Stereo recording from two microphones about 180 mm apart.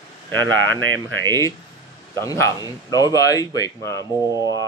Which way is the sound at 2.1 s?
15° left (ahead or behind).